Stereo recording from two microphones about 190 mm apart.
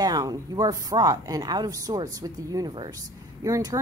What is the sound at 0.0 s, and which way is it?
A woman's voice, 20° right (ahead or behind).